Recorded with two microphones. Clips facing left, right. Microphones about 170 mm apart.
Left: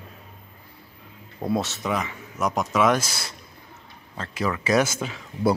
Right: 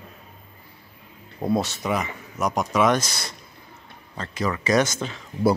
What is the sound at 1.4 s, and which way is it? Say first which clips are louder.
Speech: right 2 dB; centre (ahead or behind).